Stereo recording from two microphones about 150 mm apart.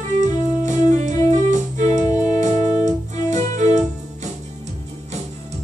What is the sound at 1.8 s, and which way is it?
Organ, 20° left (ahead or behind).